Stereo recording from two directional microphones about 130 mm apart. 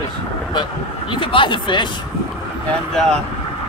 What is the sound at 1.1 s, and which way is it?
Speech, 40° left (ahead or behind).